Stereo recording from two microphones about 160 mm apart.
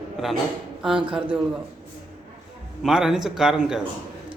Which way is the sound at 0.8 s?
5° right (ahead or behind).